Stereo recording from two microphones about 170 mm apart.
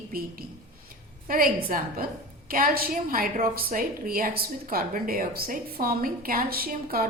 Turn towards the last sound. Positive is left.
turn(degrees=-60)  # may be behind; listen again after turning